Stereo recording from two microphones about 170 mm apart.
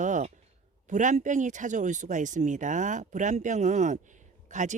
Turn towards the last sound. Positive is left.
turn(degrees=-45)  # may be behind; listen again after turning